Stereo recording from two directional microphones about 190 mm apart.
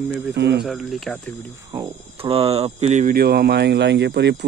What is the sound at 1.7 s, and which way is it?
Speech, 25° right (ahead or behind).